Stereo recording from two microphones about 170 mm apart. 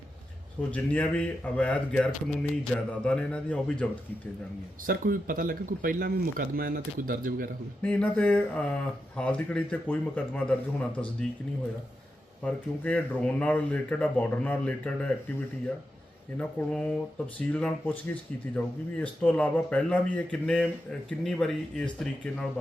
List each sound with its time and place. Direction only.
0.7 s speech: 10° left (ahead or behind)
4.9 s speech: 55° right (ahead or behind)
7.8 s speech: 5° left (ahead or behind)
12.4 s speech: 10° left (ahead or behind)